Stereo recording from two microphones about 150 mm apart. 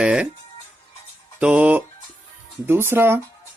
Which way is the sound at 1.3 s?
10° right (ahead or behind).